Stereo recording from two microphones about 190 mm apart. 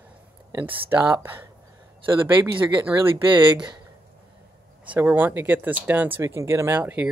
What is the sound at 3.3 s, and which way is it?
Speech, 25° right (ahead or behind).